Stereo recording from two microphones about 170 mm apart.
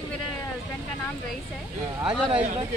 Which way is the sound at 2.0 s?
35° right (ahead or behind).